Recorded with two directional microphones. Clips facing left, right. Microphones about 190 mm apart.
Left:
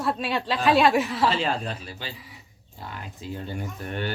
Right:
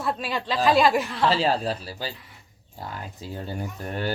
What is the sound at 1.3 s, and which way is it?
Speech, 35° right (ahead or behind).